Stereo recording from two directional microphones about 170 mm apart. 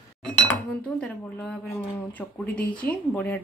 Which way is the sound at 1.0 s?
5° left (ahead or behind).